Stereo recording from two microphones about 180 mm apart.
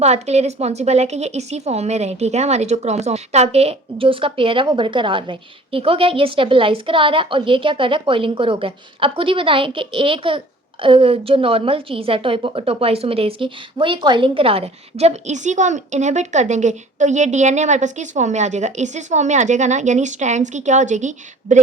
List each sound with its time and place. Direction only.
0.0 s a woman's voice: 35° right (ahead or behind)